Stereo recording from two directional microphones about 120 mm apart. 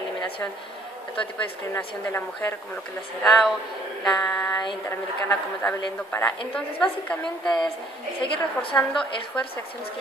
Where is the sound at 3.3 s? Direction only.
Centre (ahead or behind).